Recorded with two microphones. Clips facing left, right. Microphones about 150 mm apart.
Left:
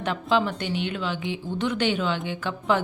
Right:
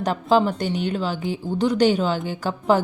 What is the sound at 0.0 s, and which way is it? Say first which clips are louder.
A woman's voice: right 5 dB; 40° right (ahead or behind).